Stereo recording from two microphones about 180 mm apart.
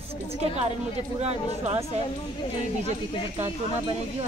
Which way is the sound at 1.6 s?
35° right (ahead or behind).